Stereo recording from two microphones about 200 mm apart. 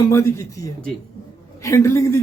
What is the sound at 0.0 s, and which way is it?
Speech, 15° left (ahead or behind).